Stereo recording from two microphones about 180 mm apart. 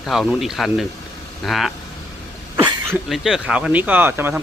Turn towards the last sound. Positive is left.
turn(degrees=-10)  # may be behind; listen again after turning